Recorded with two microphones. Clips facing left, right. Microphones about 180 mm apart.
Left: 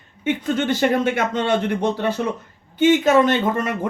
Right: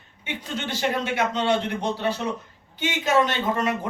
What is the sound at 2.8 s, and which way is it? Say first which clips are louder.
Speech: left 8 dB; 50° left (ahead or behind).